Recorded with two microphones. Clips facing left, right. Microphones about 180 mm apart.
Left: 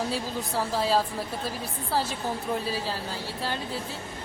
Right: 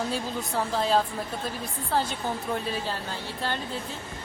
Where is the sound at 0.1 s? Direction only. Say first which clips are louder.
Even; 5° left (ahead or behind).